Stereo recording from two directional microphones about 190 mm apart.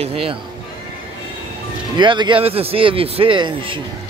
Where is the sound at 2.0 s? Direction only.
25° right (ahead or behind).